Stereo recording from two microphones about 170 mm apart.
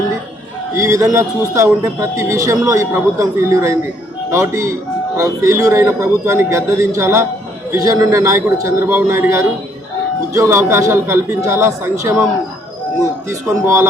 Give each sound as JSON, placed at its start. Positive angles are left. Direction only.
{"t": 0.8, "sound": "a man's voice", "side_deg": -20}